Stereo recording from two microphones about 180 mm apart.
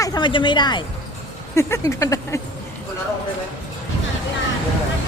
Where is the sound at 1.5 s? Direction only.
15° left (ahead or behind).